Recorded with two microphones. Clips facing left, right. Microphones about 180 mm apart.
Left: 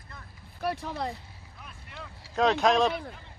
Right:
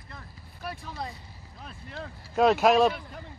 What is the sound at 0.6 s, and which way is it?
Speech, 65° left (ahead or behind).